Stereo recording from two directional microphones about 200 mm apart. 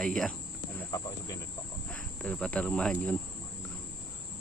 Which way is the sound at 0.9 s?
15° left (ahead or behind).